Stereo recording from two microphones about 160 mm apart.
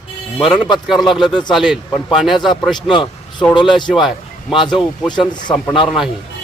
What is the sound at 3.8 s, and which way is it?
Speech, centre (ahead or behind).